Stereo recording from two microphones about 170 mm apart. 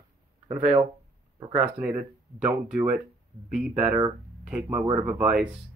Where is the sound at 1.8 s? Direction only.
10° right (ahead or behind).